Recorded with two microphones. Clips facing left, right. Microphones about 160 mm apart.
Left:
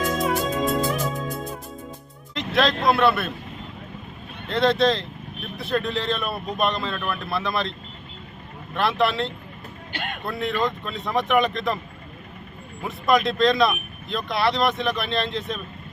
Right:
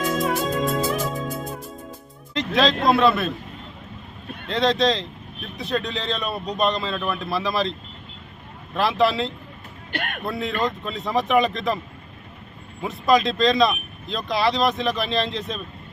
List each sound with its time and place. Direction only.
0.2 s music: centre (ahead or behind)
2.3 s speech: centre (ahead or behind)
4.4 s speech: centre (ahead or behind)
8.7 s speech: centre (ahead or behind)
9.9 s speech: 55° right (ahead or behind)
10.2 s speech: centre (ahead or behind)
12.8 s speech: centre (ahead or behind)